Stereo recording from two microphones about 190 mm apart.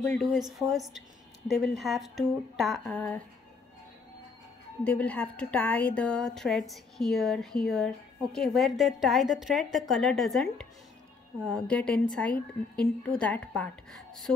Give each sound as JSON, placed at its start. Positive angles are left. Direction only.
{"t": 0.0, "sound": "a woman's voice", "side_deg": 5}
{"t": 4.8, "sound": "a woman's voice", "side_deg": 5}